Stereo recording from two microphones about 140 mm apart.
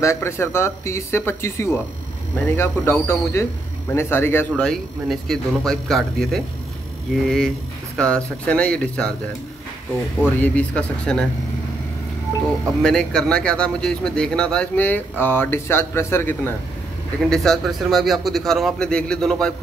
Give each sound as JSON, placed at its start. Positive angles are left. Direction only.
{"t": 0.0, "sound": "speech", "side_deg": 20}
{"t": 4.5, "sound": "a man's voice", "side_deg": 5}
{"t": 10.4, "sound": "speech", "side_deg": 10}
{"t": 12.8, "sound": "speech", "side_deg": 5}
{"t": 17.3, "sound": "a man's voice", "side_deg": 0}